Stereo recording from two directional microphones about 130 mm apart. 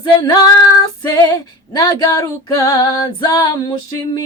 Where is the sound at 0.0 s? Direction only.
30° left (ahead or behind).